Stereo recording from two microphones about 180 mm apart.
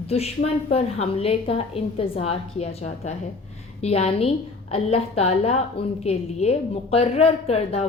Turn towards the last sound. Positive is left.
turn(degrees=35)  # may be behind; listen again after turning